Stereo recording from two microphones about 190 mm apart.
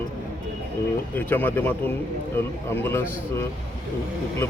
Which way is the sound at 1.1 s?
10° left (ahead or behind).